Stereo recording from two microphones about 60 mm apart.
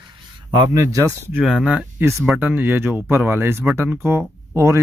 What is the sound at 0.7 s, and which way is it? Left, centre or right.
Speech, right.